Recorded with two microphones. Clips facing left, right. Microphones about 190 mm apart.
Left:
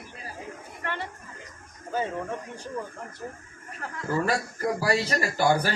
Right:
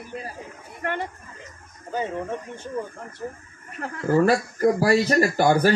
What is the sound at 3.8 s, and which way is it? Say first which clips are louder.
Speech: right 8 dB; 40° right (ahead or behind).